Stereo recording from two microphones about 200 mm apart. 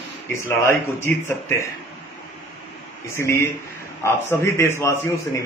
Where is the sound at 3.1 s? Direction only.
15° left (ahead or behind).